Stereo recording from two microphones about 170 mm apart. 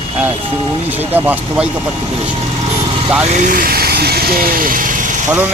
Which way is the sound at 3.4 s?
55° right (ahead or behind).